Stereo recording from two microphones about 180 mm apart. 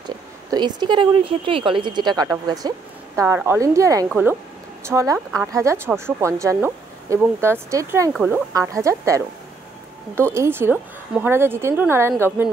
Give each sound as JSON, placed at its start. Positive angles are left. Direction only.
{"t": 0.5, "sound": "speech", "side_deg": -25}
{"t": 8.1, "sound": "speech", "side_deg": -5}
{"t": 8.5, "sound": "speech", "side_deg": -15}